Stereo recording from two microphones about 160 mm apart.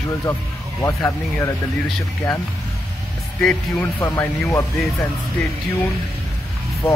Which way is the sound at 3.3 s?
10° left (ahead or behind).